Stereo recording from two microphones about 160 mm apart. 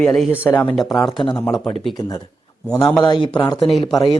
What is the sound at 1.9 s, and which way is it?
A man's voice, 30° left (ahead or behind).